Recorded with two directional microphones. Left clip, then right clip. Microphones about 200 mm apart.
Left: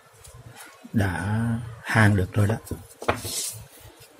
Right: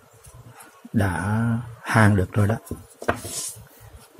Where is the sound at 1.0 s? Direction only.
10° right (ahead or behind).